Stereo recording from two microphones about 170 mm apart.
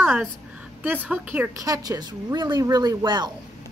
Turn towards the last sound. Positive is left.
turn(degrees=-25)  # may be behind; listen again after turning